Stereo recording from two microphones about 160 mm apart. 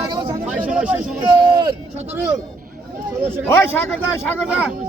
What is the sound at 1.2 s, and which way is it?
Speech, 30° right (ahead or behind).